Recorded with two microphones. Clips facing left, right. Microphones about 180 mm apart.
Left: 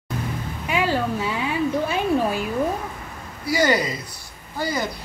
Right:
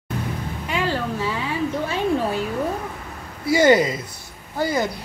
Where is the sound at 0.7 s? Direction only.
10° left (ahead or behind).